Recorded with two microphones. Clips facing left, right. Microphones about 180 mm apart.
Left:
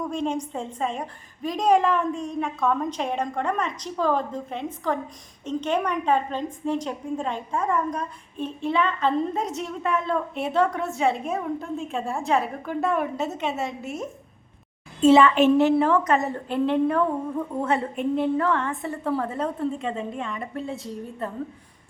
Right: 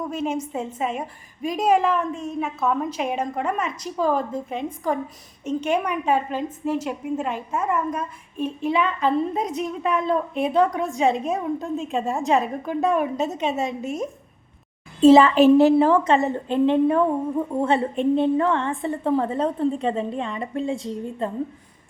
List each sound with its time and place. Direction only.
0.0 s a woman's voice: 5° right (ahead or behind)
15.0 s a woman's voice: 35° right (ahead or behind)